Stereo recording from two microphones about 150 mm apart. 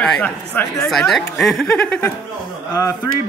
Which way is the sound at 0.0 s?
10° left (ahead or behind).